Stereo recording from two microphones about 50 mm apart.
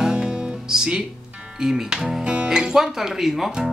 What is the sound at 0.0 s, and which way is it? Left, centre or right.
Music, centre.